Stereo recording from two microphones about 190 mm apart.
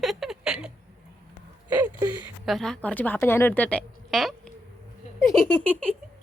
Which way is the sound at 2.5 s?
Centre (ahead or behind).